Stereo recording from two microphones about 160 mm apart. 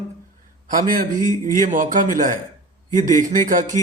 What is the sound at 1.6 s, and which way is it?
Speech, 55° right (ahead or behind).